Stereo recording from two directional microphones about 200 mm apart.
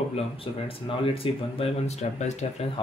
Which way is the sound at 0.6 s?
25° left (ahead or behind).